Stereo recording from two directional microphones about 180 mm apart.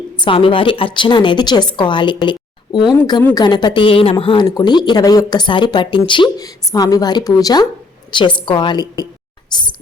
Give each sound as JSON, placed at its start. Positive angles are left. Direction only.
{"t": 0.3, "sound": "speech", "side_deg": 30}